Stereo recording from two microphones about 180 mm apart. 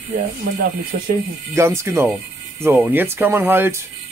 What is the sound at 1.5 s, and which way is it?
Speech, 15° right (ahead or behind).